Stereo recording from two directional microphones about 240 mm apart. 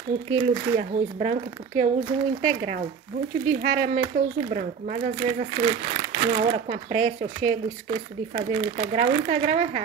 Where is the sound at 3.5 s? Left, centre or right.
Right.